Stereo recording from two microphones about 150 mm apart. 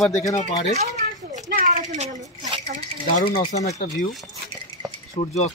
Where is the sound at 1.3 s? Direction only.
55° right (ahead or behind).